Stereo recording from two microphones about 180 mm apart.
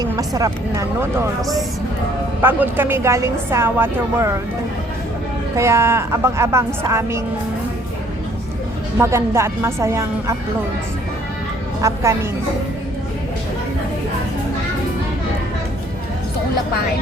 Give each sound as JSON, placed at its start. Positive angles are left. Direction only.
{"t": 0.0, "sound": "speech", "side_deg": -20}
{"t": 2.4, "sound": "a woman's voice", "side_deg": -10}
{"t": 5.5, "sound": "a woman's voice", "side_deg": -15}
{"t": 9.0, "sound": "a woman's voice", "side_deg": -15}
{"t": 11.8, "sound": "a woman's voice", "side_deg": -15}